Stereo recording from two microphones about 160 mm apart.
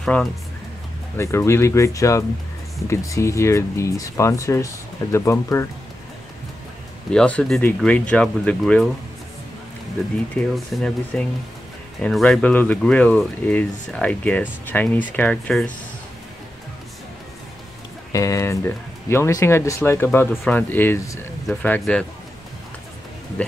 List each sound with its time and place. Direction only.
0.0 s speech: 5° left (ahead or behind)
1.1 s speech: 15° left (ahead or behind)
7.1 s speech: 5° left (ahead or behind)
10.3 s speech: 5° left (ahead or behind)
18.1 s speech: 20° left (ahead or behind)
21.5 s speech: 5° left (ahead or behind)